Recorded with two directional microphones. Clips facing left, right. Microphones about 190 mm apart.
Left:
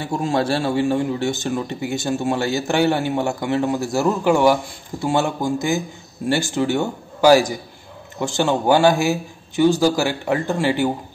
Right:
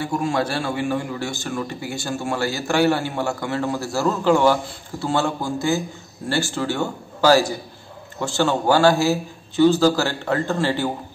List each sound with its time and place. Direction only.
0.0 s a man's voice: 25° left (ahead or behind)